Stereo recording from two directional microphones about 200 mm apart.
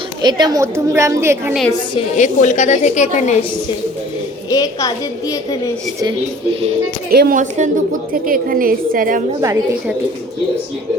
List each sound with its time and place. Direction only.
0.2 s a woman's voice: 20° right (ahead or behind)
2.0 s a woman's voice: 35° left (ahead or behind)
4.4 s a woman's voice: 20° left (ahead or behind)
6.0 s speech: 25° right (ahead or behind)
7.1 s a woman's voice: 50° right (ahead or behind)
9.4 s a woman's voice: 15° right (ahead or behind)